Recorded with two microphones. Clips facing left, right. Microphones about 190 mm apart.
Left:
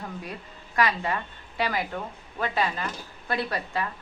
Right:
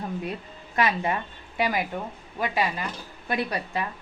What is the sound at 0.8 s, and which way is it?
Speech, 20° right (ahead or behind).